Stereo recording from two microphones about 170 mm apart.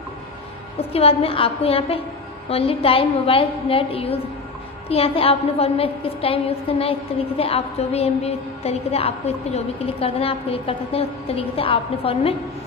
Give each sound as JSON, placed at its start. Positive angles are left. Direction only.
{"t": 0.7, "sound": "a woman's voice", "side_deg": 35}